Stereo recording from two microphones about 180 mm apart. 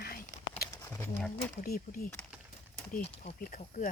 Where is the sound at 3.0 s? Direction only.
35° left (ahead or behind).